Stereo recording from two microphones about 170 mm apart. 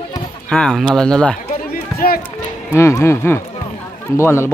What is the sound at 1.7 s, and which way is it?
Run, 60° left (ahead or behind).